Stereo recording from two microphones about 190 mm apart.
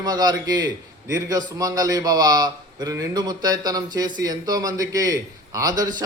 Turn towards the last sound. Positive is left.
turn(degrees=-20)  # may be behind; listen again after turning